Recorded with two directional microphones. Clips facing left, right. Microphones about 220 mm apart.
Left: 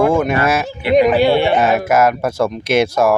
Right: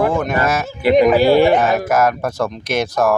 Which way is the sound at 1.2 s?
40° right (ahead or behind).